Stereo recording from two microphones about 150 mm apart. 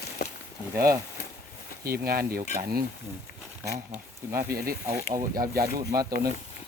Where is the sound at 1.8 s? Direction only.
85° right.